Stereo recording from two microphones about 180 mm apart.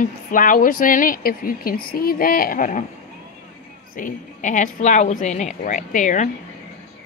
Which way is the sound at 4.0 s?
45° left (ahead or behind).